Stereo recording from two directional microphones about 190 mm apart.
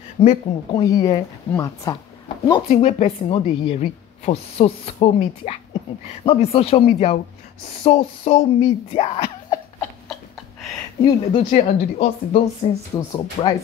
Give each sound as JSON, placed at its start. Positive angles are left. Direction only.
{"t": 0.2, "sound": "speech", "side_deg": 30}
{"t": 2.7, "sound": "a woman's voice", "side_deg": 35}
{"t": 11.1, "sound": "a woman's voice", "side_deg": 35}
{"t": 12.9, "sound": "speech", "side_deg": 20}